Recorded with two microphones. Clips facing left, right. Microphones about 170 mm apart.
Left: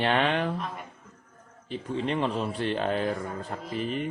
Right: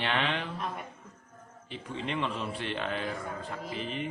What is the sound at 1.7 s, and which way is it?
A man's voice, 40° left (ahead or behind).